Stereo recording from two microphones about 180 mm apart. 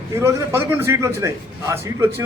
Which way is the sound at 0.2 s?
15° right (ahead or behind).